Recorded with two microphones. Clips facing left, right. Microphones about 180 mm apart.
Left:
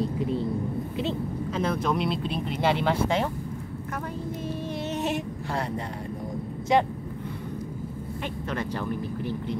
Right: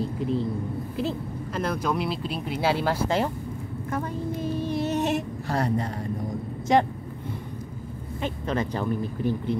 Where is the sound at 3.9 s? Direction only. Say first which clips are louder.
Right 4 dB; 35° right (ahead or behind).